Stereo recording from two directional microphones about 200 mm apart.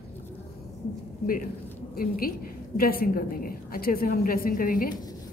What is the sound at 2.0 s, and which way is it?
A man's voice, 45° left (ahead or behind).